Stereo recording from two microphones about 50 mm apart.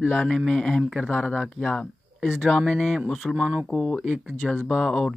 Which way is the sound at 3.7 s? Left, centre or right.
Centre.